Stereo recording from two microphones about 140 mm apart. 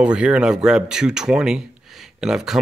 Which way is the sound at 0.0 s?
5° right (ahead or behind).